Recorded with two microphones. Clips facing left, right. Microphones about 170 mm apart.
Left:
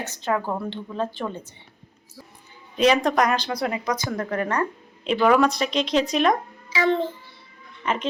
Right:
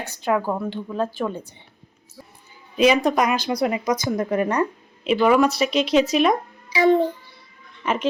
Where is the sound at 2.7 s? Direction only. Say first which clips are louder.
Right 2 dB; 5° right (ahead or behind).